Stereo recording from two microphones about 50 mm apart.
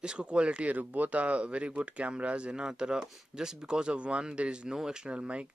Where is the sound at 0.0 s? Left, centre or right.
Centre.